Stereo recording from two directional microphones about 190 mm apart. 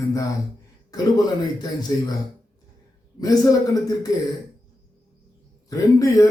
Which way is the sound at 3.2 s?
20° left (ahead or behind).